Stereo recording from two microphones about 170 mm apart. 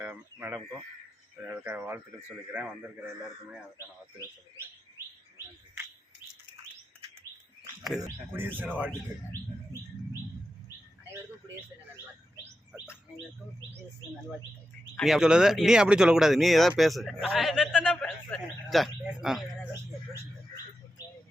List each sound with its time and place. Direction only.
0.0 s speech: 10° right (ahead or behind)
7.8 s speech: centre (ahead or behind)
14.9 s speech: centre (ahead or behind)
21.0 s a sound: 25° left (ahead or behind)